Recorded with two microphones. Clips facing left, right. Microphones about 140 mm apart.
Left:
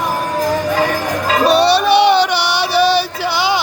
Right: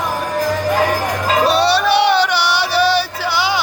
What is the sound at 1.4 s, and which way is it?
Music, 15° left (ahead or behind).